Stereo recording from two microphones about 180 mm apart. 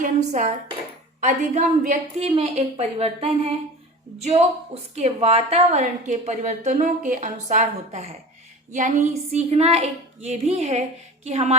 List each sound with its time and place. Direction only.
0.0 s a woman's voice: 40° right (ahead or behind)
2.2 s a woman's voice: 30° right (ahead or behind)